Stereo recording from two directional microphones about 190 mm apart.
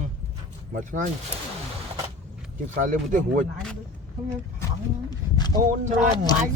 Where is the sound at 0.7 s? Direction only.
40° right (ahead or behind).